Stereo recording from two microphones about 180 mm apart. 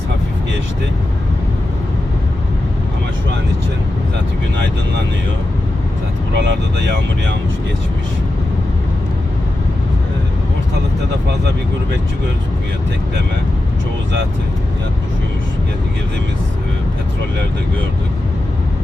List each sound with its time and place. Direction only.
6.3 s speech: 75° right (ahead or behind)